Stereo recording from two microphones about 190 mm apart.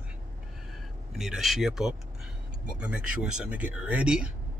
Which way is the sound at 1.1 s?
Centre (ahead or behind).